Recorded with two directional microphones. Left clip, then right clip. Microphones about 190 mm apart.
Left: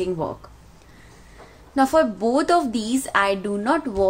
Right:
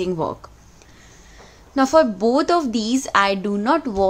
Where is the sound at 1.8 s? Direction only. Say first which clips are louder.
Right 3 dB; 20° right (ahead or behind).